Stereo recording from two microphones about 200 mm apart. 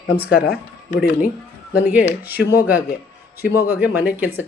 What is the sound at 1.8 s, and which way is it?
Speech, 10° right (ahead or behind).